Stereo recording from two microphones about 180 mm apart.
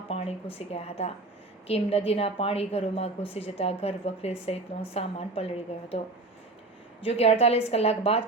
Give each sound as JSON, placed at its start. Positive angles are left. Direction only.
{"t": 0.1, "sound": "a sound", "side_deg": 35}
{"t": 0.7, "sound": "a woman's voice", "side_deg": 35}
{"t": 7.0, "sound": "a woman's voice", "side_deg": 35}